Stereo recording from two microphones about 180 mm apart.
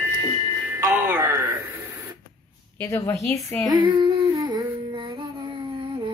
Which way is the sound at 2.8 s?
15° left (ahead or behind).